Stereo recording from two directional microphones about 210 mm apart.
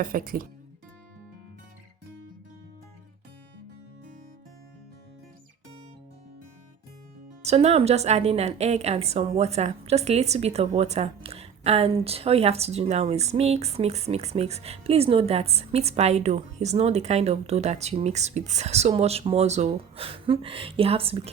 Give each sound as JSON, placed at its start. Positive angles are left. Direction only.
{"t": 0.0, "sound": "speech", "side_deg": -40}
{"t": 7.4, "sound": "a woman's voice", "side_deg": -30}